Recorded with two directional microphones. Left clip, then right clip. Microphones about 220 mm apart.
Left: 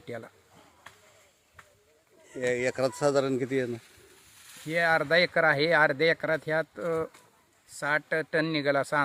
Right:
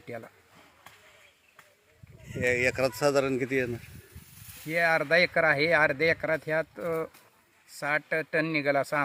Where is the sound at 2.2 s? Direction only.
Centre (ahead or behind).